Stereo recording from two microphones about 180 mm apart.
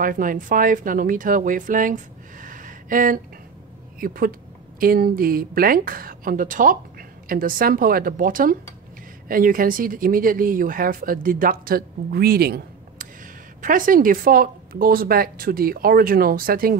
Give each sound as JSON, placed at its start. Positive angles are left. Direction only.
{"t": 0.0, "sound": "speech", "side_deg": -50}
{"t": 2.4, "sound": "a sound", "side_deg": -50}
{"t": 4.0, "sound": "speech", "side_deg": -50}
{"t": 13.6, "sound": "speech", "side_deg": -50}